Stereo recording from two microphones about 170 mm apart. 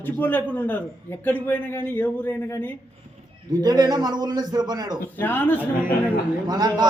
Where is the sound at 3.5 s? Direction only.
25° right (ahead or behind).